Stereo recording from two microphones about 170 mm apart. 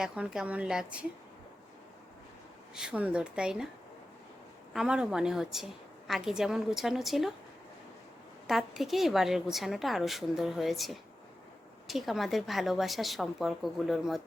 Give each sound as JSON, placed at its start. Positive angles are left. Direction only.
{"t": 0.0, "sound": "a woman's voice", "side_deg": -5}
{"t": 2.7, "sound": "a woman's voice", "side_deg": -5}
{"t": 4.7, "sound": "a woman's voice", "side_deg": -5}
{"t": 8.4, "sound": "a woman's voice", "side_deg": 0}